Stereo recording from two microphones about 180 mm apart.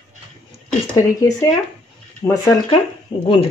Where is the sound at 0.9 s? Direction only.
20° left (ahead or behind).